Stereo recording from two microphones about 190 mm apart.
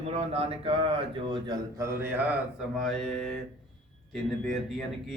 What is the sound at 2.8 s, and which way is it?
Speech, centre (ahead or behind).